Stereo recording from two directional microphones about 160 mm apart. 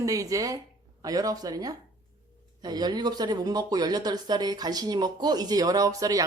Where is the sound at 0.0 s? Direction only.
20° right (ahead or behind).